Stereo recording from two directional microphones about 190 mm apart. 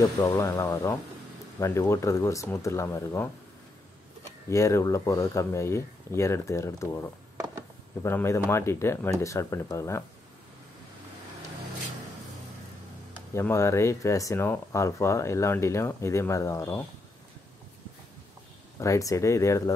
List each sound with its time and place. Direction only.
0.0 s speech: 15° left (ahead or behind)
4.5 s speech: 15° left (ahead or behind)
7.3 s a sound: 20° right (ahead or behind)
8.0 s speech: 15° left (ahead or behind)
13.3 s speech: 15° left (ahead or behind)
18.8 s speech: 15° left (ahead or behind)